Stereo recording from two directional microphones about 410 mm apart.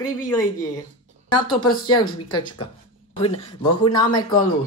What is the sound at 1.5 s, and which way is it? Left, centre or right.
Speech, centre.